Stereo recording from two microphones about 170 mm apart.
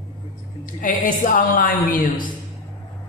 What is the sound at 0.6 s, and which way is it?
A woman's voice, 50° left (ahead or behind).